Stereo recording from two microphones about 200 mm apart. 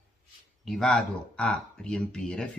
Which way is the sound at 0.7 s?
Centre (ahead or behind).